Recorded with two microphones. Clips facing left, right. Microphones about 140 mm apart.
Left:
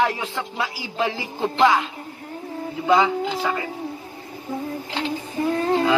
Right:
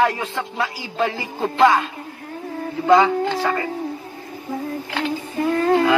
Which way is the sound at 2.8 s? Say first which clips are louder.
Right 4 dB; 15° left (ahead or behind).